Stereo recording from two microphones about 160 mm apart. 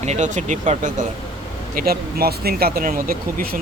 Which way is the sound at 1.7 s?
70° right (ahead or behind).